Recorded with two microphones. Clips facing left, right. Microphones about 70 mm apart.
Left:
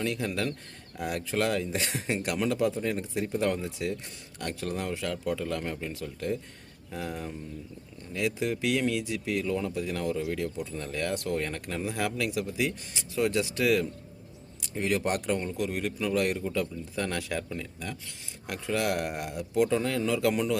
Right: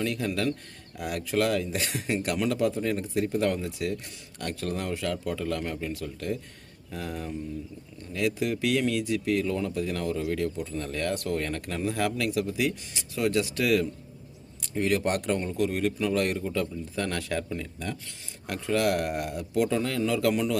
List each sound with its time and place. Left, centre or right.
0.0 s speech: centre
0.9 s speech: left; by 17.9 s centre
18.4 s speech: centre